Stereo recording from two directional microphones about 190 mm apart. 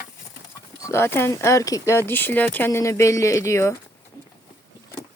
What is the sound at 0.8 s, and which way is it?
Speech, 15° left (ahead or behind).